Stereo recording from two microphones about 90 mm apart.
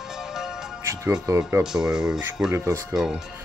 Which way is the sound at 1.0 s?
35° right (ahead or behind).